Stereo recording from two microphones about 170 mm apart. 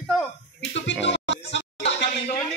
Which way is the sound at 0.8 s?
90° left.